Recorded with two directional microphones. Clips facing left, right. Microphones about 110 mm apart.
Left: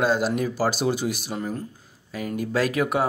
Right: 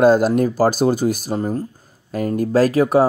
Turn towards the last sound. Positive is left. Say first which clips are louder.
# right 8 dB
turn(degrees=-35)  # may be behind; listen again after turning